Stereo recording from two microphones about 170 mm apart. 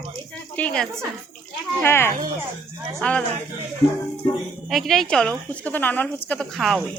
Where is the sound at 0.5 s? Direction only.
5° left (ahead or behind).